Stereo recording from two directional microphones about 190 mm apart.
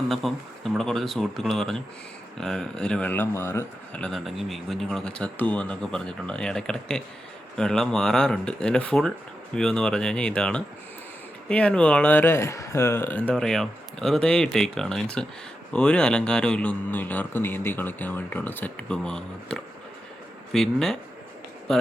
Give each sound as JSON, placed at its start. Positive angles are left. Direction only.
{"t": 0.1, "sound": "speech", "side_deg": 0}